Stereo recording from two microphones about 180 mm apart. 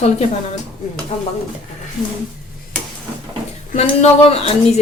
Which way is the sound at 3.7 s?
40° left (ahead or behind).